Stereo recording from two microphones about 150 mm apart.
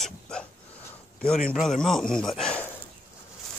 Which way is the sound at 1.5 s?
Centre (ahead or behind).